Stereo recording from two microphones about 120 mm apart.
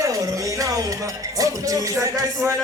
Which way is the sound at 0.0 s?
30° right (ahead or behind).